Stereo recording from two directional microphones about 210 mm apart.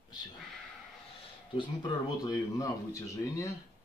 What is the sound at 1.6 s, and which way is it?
A man's voice, 20° left (ahead or behind).